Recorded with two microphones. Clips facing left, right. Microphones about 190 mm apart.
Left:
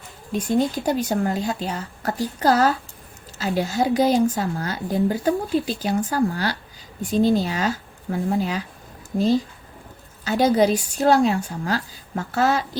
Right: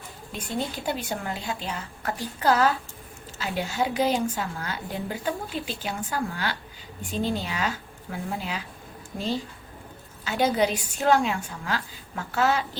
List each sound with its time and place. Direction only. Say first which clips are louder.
0.4 s a woman's voice: left 8 dB; 40° left (ahead or behind)